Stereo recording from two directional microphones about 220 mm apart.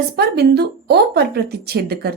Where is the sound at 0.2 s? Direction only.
45° right (ahead or behind).